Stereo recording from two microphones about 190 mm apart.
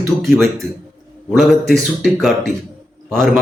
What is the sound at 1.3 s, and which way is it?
Speech, centre (ahead or behind).